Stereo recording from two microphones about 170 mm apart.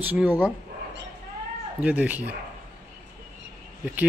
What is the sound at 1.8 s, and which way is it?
Speech, 10° right (ahead or behind).